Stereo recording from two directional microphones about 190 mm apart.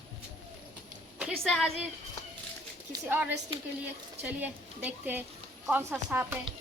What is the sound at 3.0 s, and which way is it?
A woman's voice, 10° right (ahead or behind).